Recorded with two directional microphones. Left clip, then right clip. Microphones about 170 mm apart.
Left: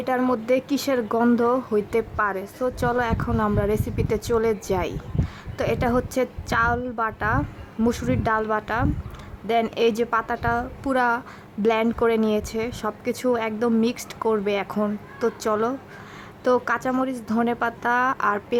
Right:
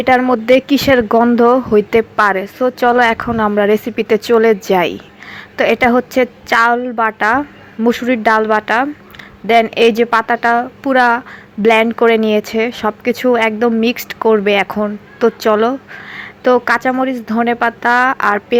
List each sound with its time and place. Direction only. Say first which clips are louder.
0.3 s a woman's voice: right 11 dB; 25° right (ahead or behind)